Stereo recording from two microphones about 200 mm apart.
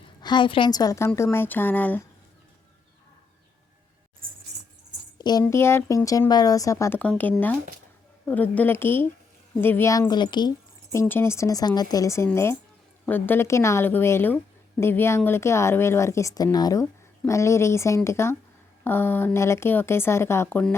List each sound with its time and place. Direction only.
0.2 s speech: 20° left (ahead or behind)
5.1 s speech: 20° left (ahead or behind)
11.0 s speech: 10° left (ahead or behind)